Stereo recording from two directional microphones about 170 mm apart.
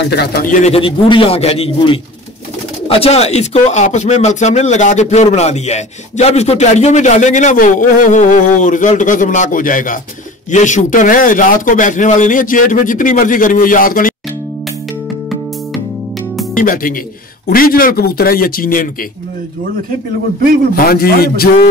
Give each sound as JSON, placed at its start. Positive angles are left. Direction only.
{"t": 0.0, "sound": "a man's voice", "side_deg": 75}
{"t": 0.6, "sound": "a man's voice", "side_deg": 35}
{"t": 3.0, "sound": "speech", "side_deg": 40}
{"t": 16.5, "sound": "speech", "side_deg": 55}
{"t": 20.7, "sound": "speech", "side_deg": 60}